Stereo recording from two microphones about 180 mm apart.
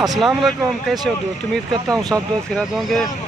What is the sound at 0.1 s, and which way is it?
Speech, centre (ahead or behind).